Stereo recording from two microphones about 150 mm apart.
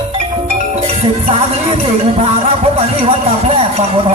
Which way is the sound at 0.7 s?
40° right (ahead or behind).